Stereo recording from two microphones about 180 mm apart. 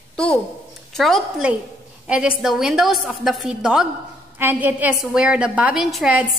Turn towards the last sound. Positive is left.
turn(degrees=0)  # may be behind; listen again after turning